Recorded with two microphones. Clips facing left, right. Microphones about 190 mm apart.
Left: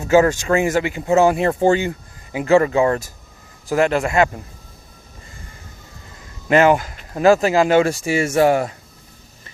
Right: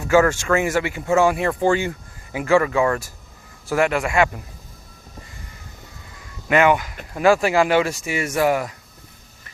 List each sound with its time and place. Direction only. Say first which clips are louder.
0.0 s speech: left 2 dB; 20° left (ahead or behind)
1.2 s speech: left 4 dB; 35° left (ahead or behind)
6.5 s speech: left 3 dB; 35° left (ahead or behind)